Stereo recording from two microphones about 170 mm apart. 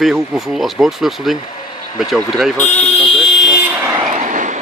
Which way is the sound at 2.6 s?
10° left (ahead or behind).